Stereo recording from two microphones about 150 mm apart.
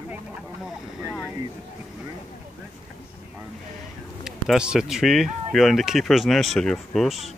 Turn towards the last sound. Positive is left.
turn(degrees=0)  # may be behind; listen again after turning